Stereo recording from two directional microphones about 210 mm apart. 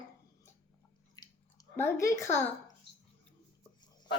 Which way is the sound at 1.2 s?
15° left (ahead or behind).